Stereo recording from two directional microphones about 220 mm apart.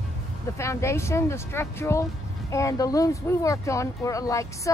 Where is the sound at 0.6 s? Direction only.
15° left (ahead or behind).